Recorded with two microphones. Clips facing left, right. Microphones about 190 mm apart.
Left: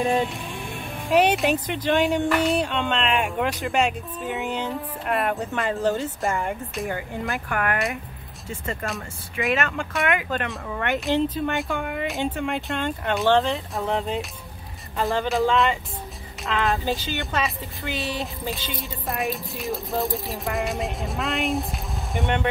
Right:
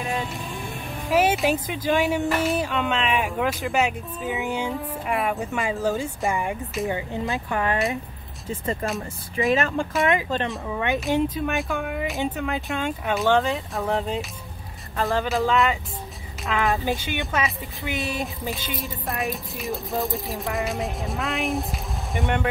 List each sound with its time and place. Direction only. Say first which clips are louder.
1.1 s speech: left 1 dB; 5° right (ahead or behind); by 7.8 s 25° right (ahead or behind)
8.8 s speech: right 3 dB; centre (ahead or behind)
9.6 s speech: right 3 dB; 30° right (ahead or behind)
10.7 s speech: even; 15° right (ahead or behind)
16.7 s speech: even; 20° right (ahead or behind)
17.2 s speech: right 1 dB; 5° right (ahead or behind)